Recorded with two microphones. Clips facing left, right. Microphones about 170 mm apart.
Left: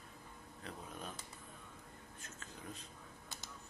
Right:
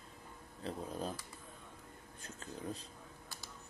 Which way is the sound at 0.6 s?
35° right (ahead or behind).